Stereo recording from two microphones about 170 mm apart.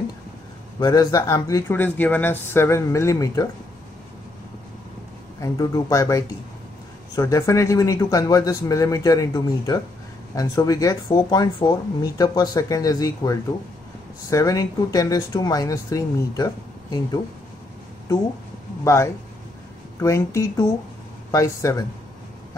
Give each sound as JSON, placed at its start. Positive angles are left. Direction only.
{"t": 0.7, "sound": "speech", "side_deg": 25}
{"t": 5.4, "sound": "speech", "side_deg": 20}
{"t": 18.9, "sound": "speech", "side_deg": 15}